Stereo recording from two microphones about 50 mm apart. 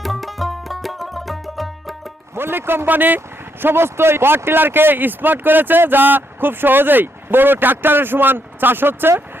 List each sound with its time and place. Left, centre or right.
0.0 s music: centre
2.3 s speech: right
3.6 s speech: right